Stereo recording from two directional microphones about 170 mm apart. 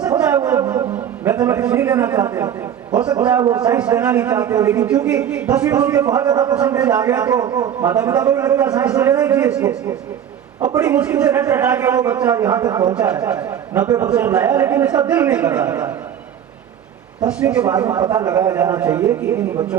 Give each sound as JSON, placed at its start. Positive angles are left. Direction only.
{"t": 0.2, "sound": "a sound", "side_deg": -10}
{"t": 0.7, "sound": "a man's voice", "side_deg": -10}
{"t": 6.6, "sound": "speech", "side_deg": -10}
{"t": 17.2, "sound": "speech", "side_deg": -10}